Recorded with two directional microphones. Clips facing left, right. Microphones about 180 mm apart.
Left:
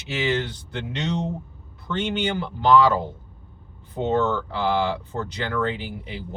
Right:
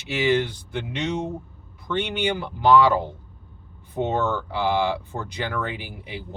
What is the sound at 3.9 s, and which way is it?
Speech, 15° right (ahead or behind).